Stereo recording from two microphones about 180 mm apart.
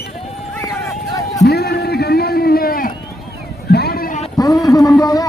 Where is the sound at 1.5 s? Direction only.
60° left (ahead or behind).